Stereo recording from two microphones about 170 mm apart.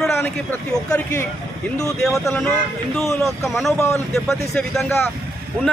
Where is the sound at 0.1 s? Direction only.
15° left (ahead or behind).